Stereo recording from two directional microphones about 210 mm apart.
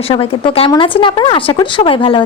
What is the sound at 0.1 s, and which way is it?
Speech, 25° left (ahead or behind).